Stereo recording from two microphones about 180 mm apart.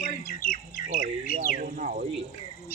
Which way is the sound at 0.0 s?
50° left (ahead or behind).